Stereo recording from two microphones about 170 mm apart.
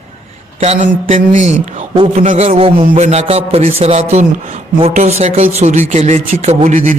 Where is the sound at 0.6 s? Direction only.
45° right (ahead or behind).